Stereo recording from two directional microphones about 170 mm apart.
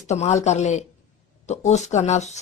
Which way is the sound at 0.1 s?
40° left (ahead or behind).